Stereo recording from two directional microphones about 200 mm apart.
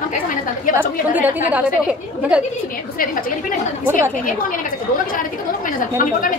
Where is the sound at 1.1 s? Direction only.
10° right (ahead or behind).